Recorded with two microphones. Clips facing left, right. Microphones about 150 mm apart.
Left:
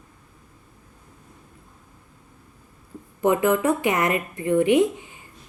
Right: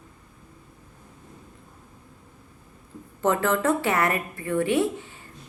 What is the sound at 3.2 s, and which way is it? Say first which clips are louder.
A woman's voice: left 3 dB; 15° left (ahead or behind).